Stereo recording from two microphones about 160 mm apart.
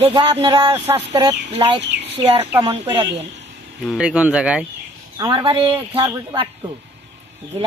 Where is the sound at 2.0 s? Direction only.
40° right (ahead or behind).